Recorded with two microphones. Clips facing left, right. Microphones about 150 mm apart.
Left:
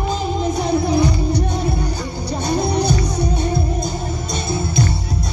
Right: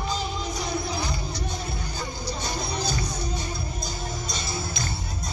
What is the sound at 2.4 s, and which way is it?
Music, 60° left (ahead or behind).